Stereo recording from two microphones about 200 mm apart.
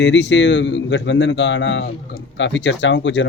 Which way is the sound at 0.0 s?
65° left (ahead or behind).